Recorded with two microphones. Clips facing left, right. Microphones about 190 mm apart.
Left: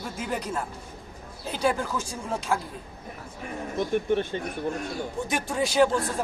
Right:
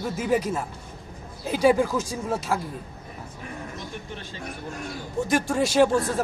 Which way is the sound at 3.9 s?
60° left (ahead or behind).